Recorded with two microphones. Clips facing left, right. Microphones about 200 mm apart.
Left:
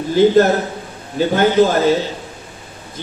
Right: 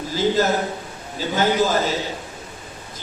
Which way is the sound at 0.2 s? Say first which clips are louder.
Left 9 dB; 60° left (ahead or behind).